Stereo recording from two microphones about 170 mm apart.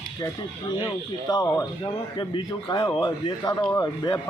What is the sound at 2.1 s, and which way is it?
A man's voice, 30° left (ahead or behind).